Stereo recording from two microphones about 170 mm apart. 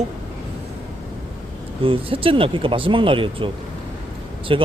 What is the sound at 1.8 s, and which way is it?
Speech, 30° right (ahead or behind).